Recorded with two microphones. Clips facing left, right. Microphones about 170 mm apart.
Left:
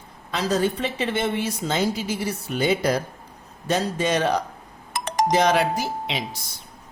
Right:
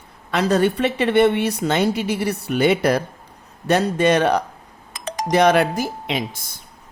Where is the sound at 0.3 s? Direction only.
65° right (ahead or behind).